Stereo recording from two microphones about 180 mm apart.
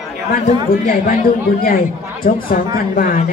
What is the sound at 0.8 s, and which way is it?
Speech, 50° left (ahead or behind).